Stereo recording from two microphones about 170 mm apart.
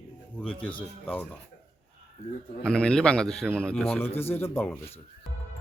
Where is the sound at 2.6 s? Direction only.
5° left (ahead or behind).